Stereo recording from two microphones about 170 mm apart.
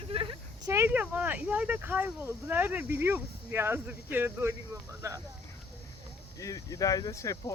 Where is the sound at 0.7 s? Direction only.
15° right (ahead or behind).